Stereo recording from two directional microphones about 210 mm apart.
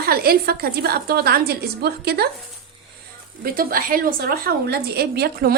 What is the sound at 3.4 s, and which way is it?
A woman's voice, 45° right (ahead or behind).